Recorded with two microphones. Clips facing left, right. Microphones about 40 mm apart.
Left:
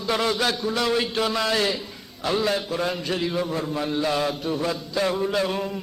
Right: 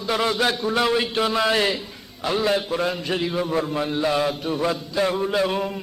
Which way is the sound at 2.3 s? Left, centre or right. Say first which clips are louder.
Right 2 dB; centre.